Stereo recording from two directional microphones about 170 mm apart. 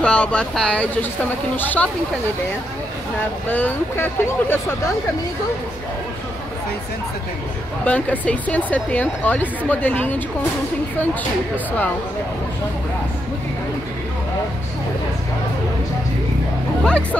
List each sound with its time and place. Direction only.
0.0 s speech: 5° left (ahead or behind)
3.4 s speech: 10° left (ahead or behind)
7.8 s speech: 10° left (ahead or behind)
16.8 s speech: 5° left (ahead or behind)